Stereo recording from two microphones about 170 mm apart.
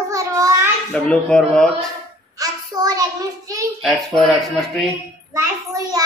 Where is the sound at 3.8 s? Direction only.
Centre (ahead or behind).